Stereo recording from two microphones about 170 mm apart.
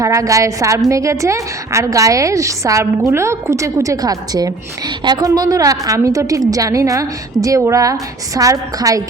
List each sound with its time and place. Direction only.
0.0 s a woman's voice: 20° right (ahead or behind)